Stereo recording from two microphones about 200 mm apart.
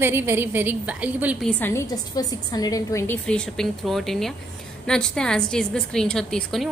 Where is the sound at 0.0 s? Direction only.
10° right (ahead or behind).